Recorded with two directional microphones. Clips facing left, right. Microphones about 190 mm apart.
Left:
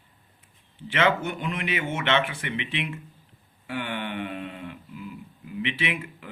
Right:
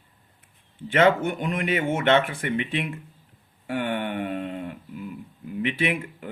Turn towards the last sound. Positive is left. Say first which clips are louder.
# right 5 dB
turn(degrees=-50)  # may be behind; listen again after turning